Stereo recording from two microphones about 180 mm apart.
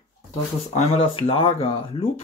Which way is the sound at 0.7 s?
35° left (ahead or behind).